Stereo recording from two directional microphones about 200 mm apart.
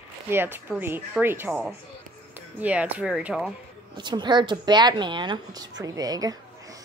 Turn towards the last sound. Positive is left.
turn(degrees=-20)  # may be behind; listen again after turning